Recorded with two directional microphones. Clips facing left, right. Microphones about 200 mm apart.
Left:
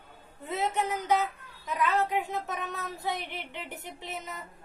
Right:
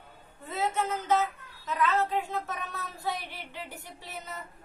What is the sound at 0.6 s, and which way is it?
A woman's voice, 15° left (ahead or behind).